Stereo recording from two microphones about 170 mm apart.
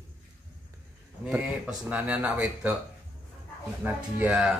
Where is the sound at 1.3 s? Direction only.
10° right (ahead or behind).